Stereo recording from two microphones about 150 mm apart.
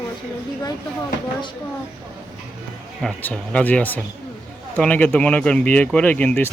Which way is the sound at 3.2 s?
10° left (ahead or behind).